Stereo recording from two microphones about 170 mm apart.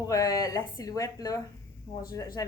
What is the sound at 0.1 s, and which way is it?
A woman's voice, 20° left (ahead or behind).